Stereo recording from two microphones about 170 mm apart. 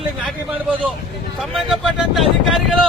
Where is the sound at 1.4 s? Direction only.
Centre (ahead or behind).